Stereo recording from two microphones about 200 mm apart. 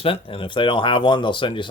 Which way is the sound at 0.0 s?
25° left (ahead or behind).